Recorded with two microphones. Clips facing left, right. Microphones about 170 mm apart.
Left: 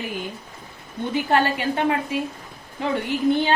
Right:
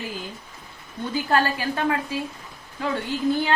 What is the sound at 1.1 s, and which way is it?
A woman's voice, 20° left (ahead or behind).